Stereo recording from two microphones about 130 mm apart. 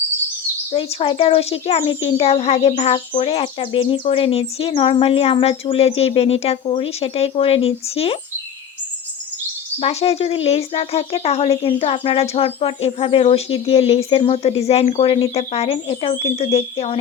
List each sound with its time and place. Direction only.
0.7 s speech: 50° left (ahead or behind)
9.8 s speech: 50° left (ahead or behind)